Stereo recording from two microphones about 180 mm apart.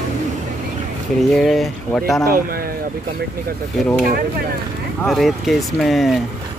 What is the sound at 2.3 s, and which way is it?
Speech, 55° right (ahead or behind).